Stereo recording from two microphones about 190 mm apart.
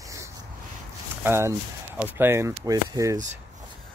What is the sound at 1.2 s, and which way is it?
Speech, 15° right (ahead or behind).